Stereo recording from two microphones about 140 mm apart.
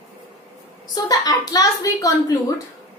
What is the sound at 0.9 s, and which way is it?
A woman's voice, 25° left (ahead or behind).